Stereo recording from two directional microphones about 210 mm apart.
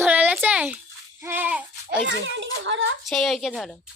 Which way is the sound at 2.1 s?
60° right (ahead or behind).